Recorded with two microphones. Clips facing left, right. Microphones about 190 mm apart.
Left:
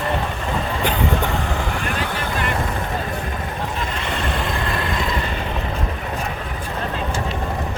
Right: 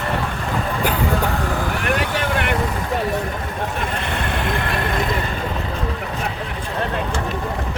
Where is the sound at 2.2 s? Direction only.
70° right (ahead or behind).